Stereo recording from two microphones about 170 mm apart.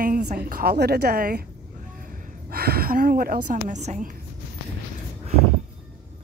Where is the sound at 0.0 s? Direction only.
50° right (ahead or behind).